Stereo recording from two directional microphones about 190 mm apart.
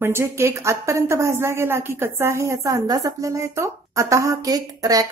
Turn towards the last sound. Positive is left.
turn(degrees=-20)  # may be behind; listen again after turning